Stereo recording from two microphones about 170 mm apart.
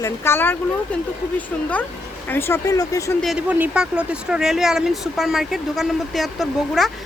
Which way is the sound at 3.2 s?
5° right (ahead or behind).